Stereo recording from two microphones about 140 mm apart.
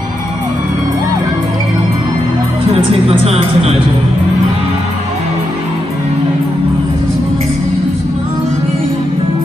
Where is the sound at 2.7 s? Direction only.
40° right (ahead or behind).